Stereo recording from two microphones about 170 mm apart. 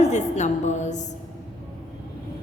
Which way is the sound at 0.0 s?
45° left (ahead or behind).